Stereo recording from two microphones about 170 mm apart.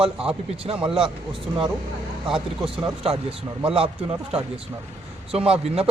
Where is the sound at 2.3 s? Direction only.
30° right (ahead or behind).